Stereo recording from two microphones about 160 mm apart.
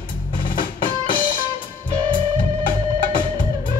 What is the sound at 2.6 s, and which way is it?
Music, 30° left (ahead or behind).